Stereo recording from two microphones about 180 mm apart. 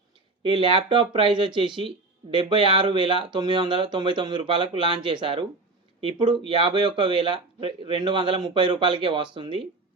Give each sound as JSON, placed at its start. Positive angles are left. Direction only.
{"t": 0.4, "sound": "speech", "side_deg": -30}